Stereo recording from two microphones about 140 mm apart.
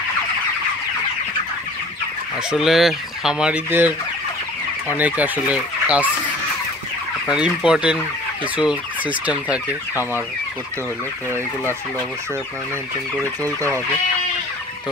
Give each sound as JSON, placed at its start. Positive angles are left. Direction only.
{"t": 2.5, "sound": "fowl", "side_deg": 0}
{"t": 7.2, "sound": "fowl", "side_deg": -5}
{"t": 13.2, "sound": "speech", "side_deg": 15}